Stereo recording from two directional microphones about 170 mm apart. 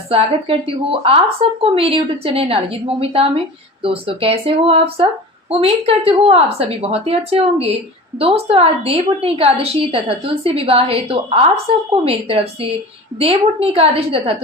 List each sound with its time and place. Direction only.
0.1 s a woman's voice: 35° right (ahead or behind)